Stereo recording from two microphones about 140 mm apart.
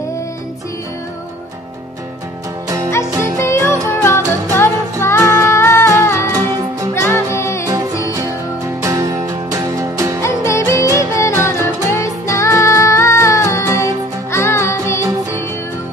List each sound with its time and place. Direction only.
3.2 s music: 20° left (ahead or behind)
8.8 s music: 25° right (ahead or behind)
10.4 s music: 20° left (ahead or behind)